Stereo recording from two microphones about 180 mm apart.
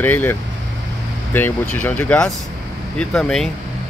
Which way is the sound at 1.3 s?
10° left (ahead or behind).